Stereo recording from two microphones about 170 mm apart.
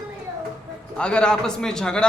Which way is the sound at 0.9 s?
5° left (ahead or behind).